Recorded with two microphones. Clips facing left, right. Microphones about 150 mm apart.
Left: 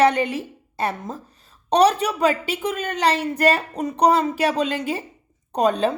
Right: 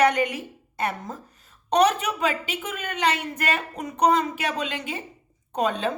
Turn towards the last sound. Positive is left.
turn(degrees=40)  # may be behind; listen again after turning